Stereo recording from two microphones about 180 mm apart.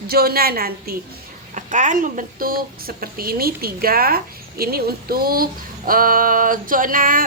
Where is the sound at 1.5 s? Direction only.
45° right (ahead or behind).